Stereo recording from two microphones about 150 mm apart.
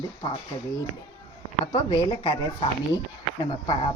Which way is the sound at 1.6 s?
35° left (ahead or behind).